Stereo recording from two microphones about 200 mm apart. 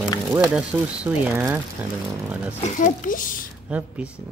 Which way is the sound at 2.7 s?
40° left (ahead or behind).